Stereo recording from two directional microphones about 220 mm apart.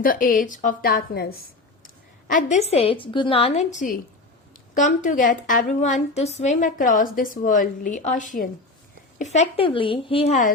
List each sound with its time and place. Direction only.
0.0 s a woman's voice: 40° left (ahead or behind)